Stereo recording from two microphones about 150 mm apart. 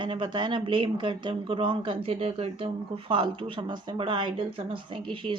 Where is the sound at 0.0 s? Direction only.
30° right (ahead or behind).